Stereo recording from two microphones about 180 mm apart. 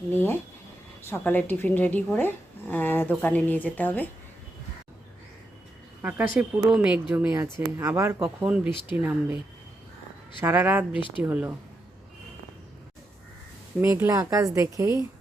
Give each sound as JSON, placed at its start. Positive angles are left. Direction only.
{"t": 0.1, "sound": "speech", "side_deg": 10}
{"t": 6.0, "sound": "speech", "side_deg": -10}
{"t": 10.4, "sound": "speech", "side_deg": -10}
{"t": 13.8, "sound": "speech", "side_deg": -15}